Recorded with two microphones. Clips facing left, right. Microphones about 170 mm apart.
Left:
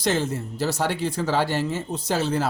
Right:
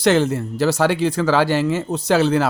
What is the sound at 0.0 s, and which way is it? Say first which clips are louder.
Speech: right 8 dB; 75° right (ahead or behind).